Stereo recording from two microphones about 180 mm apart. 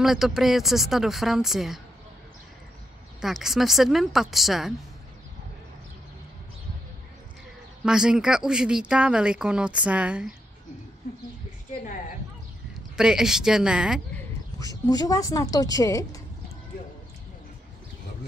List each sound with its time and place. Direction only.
0.0 s speech: centre (ahead or behind)
3.2 s speech: centre (ahead or behind)
7.8 s speech: 5° right (ahead or behind)
12.9 s speech: 5° right (ahead or behind)
14.6 s a woman's voice: 20° left (ahead or behind)